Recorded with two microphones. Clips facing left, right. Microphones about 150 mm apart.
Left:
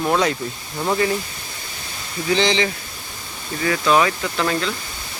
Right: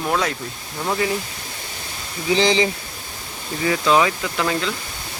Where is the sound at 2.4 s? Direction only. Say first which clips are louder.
Right 2 dB; 35° right (ahead or behind).